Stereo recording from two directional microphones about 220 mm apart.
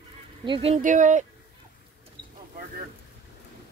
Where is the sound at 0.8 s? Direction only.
35° right (ahead or behind).